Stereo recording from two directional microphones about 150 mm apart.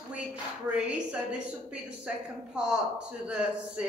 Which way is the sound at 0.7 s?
5° right (ahead or behind).